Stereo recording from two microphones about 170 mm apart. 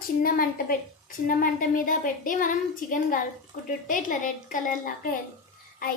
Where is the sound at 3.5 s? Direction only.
50° left (ahead or behind).